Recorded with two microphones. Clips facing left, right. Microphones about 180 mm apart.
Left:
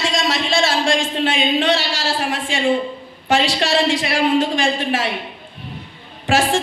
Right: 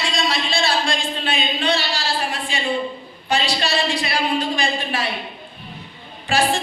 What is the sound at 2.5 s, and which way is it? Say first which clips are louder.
Speech: left 7 dB; 90° left.